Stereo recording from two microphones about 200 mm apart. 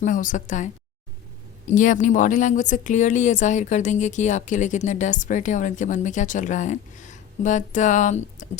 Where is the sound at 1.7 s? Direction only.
40° left (ahead or behind).